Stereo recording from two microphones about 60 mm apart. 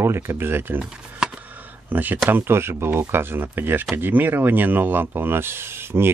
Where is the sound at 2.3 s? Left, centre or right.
Right.